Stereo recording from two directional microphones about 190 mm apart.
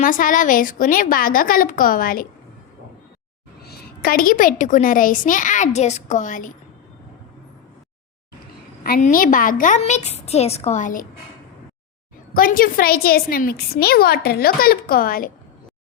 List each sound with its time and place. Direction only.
0.0 s a woman's voice: 45° left (ahead or behind)
3.7 s a woman's voice: 50° left (ahead or behind)
8.8 s a woman's voice: 45° left (ahead or behind)
12.3 s a woman's voice: 50° left (ahead or behind)